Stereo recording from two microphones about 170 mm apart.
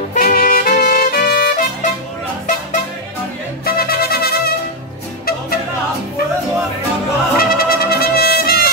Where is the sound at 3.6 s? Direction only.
65° left (ahead or behind).